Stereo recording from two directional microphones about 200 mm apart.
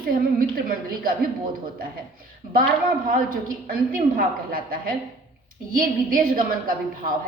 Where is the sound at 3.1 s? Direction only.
45° right (ahead or behind).